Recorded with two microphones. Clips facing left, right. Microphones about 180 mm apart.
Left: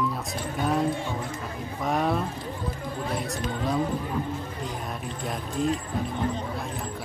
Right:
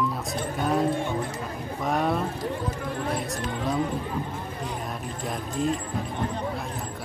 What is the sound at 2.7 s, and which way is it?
Music, 70° right (ahead or behind).